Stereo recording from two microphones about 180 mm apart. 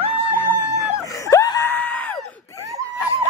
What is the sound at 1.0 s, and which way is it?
Screaming, 20° left (ahead or behind).